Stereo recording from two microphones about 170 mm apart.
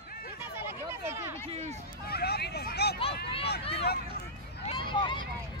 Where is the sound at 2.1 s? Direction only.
70° left (ahead or behind).